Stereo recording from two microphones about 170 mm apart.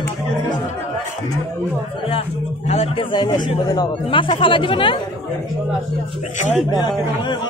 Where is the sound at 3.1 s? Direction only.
25° left (ahead or behind).